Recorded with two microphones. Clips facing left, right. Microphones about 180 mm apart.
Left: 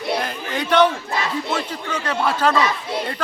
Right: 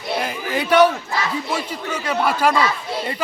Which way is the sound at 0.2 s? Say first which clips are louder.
Right 2 dB; 10° right (ahead or behind).